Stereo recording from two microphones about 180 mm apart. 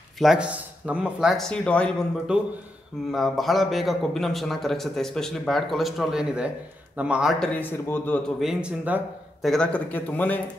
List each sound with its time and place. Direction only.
0.2 s a man's voice: 5° right (ahead or behind)
2.3 s a man's voice: 5° right (ahead or behind)
8.4 s a man's voice: 5° right (ahead or behind)
9.5 s speech: 5° left (ahead or behind)